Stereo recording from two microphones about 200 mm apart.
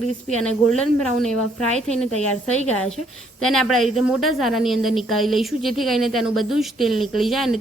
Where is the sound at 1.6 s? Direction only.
35° right (ahead or behind).